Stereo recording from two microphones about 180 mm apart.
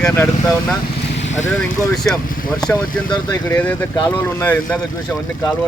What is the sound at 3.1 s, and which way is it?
Speech, 20° left (ahead or behind).